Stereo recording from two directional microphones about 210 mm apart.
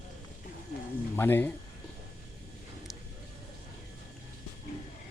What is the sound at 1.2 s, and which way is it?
Speech, 10° left (ahead or behind).